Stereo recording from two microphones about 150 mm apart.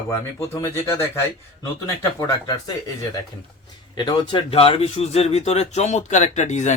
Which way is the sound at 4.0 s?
30° left (ahead or behind).